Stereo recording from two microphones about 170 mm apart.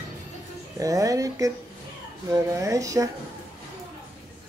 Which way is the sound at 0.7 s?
20° right (ahead or behind).